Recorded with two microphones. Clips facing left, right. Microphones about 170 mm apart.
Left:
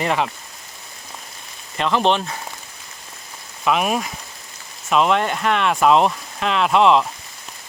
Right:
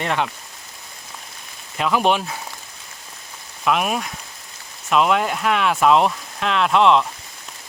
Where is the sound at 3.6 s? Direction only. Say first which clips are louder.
Left 1 dB; centre (ahead or behind).